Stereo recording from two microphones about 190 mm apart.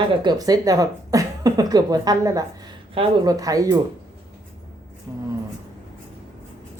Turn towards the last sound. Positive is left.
turn(degrees=-15)  # may be behind; listen again after turning